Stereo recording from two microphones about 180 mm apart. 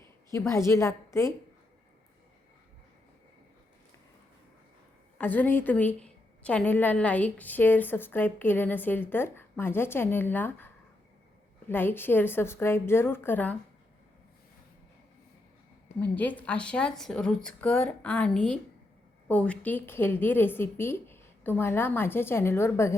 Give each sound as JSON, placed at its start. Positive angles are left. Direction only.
{"t": 0.3, "sound": "a woman's voice", "side_deg": 15}
{"t": 5.1, "sound": "a woman's voice", "side_deg": 10}
{"t": 11.7, "sound": "a woman's voice", "side_deg": 10}
{"t": 16.0, "sound": "a woman's voice", "side_deg": 10}